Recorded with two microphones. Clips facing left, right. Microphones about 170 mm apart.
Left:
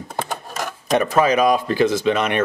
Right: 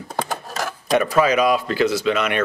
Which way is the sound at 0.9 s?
40° left (ahead or behind).